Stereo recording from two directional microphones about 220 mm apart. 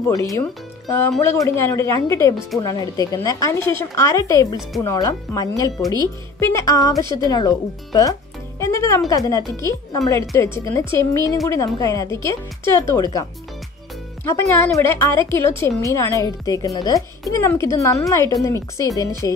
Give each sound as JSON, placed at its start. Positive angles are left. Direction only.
{"t": 0.1, "sound": "speech", "side_deg": 15}